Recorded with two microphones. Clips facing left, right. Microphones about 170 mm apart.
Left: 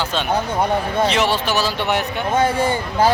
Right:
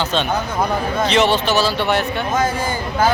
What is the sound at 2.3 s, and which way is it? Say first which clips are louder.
Speech: left 4 dB; 30° left (ahead or behind).